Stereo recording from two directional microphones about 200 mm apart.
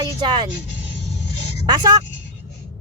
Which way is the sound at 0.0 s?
20° right (ahead or behind).